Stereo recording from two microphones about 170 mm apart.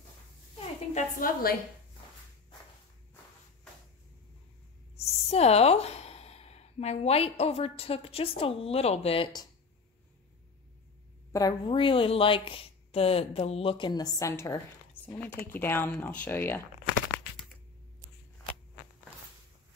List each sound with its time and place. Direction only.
0.9 s a woman's voice: 55° left (ahead or behind)
5.0 s a woman's voice: 35° left (ahead or behind)
11.3 s speech: 25° left (ahead or behind)